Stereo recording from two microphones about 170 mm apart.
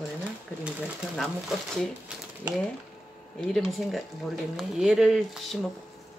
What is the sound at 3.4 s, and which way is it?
Speech, 5° left (ahead or behind).